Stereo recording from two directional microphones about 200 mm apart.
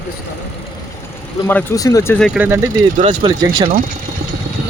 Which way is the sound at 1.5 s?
10° left (ahead or behind).